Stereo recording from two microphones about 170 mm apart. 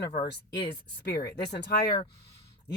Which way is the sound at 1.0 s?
75° left (ahead or behind).